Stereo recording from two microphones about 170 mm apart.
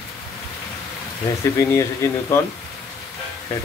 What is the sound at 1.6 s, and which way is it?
Speech, 15° left (ahead or behind).